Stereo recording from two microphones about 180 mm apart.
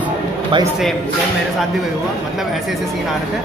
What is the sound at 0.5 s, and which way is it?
Speech, 25° right (ahead or behind).